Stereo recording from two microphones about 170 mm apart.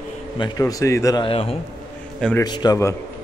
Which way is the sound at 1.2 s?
35° left (ahead or behind).